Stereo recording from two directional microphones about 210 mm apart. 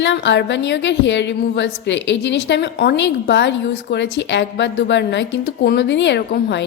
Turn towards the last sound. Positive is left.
turn(degrees=55)  # may be behind; listen again after turning